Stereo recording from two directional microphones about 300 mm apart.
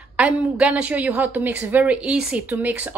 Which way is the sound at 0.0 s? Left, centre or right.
Centre.